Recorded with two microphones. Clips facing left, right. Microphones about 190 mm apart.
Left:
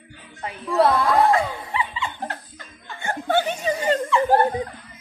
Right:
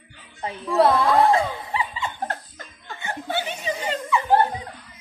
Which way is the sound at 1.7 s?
40° right (ahead or behind).